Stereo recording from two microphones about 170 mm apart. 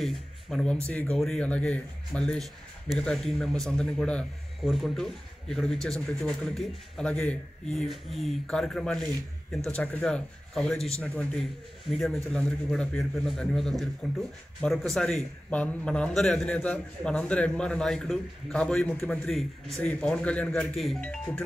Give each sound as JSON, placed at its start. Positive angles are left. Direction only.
{"t": 0.0, "sound": "a man's voice", "side_deg": 5}